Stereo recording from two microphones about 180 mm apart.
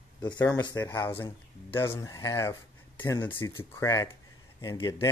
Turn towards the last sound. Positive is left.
turn(degrees=15)  # may be behind; listen again after turning